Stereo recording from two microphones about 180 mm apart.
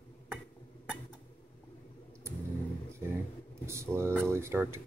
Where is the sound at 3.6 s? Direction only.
15° right (ahead or behind).